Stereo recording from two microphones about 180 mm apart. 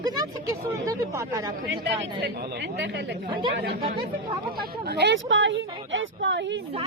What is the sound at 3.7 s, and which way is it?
Speech, 30° right (ahead or behind).